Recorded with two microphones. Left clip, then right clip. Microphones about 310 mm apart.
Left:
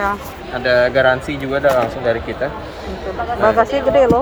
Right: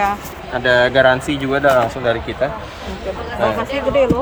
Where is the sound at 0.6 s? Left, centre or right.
Right.